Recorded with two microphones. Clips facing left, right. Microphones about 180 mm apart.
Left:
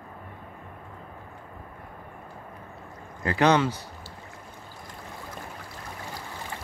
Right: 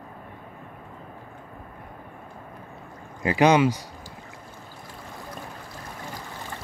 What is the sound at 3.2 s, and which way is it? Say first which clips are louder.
Speech: right 3 dB; 15° right (ahead or behind).